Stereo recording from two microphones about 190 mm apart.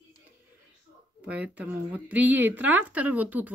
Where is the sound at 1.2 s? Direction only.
5° right (ahead or behind).